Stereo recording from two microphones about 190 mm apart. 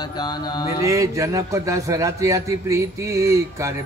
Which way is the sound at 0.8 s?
15° right (ahead or behind).